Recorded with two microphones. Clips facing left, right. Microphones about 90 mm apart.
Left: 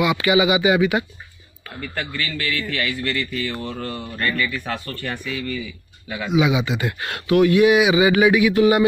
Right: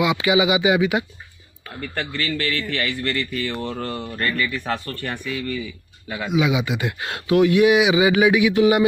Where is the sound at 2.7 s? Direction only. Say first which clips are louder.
Even; 35° right (ahead or behind).